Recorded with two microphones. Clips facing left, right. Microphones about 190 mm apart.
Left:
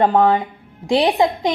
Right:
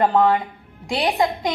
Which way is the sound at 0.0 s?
25° left (ahead or behind).